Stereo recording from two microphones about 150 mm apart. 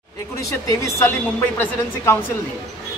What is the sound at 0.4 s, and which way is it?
A man's voice, 20° left (ahead or behind).